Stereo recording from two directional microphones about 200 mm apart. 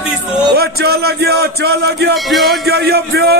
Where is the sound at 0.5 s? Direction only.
50° right (ahead or behind).